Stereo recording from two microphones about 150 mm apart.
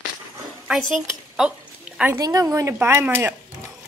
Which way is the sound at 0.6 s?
5° right (ahead or behind).